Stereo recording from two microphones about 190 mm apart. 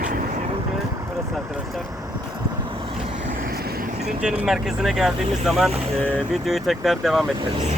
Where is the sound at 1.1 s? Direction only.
Centre (ahead or behind).